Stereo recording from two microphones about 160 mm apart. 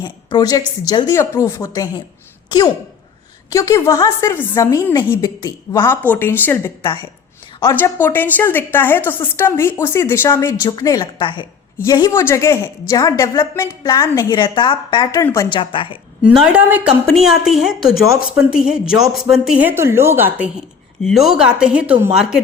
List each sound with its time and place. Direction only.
0.3 s a woman's voice: 25° left (ahead or behind)
3.5 s a woman's voice: 20° left (ahead or behind)
15.2 s a woman's voice: 15° left (ahead or behind)
15.4 s a woman's voice: 30° left (ahead or behind)
16.2 s speech: 5° right (ahead or behind)
21.0 s speech: centre (ahead or behind)